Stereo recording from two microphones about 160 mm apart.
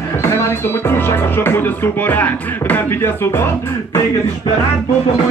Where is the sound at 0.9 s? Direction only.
15° left (ahead or behind).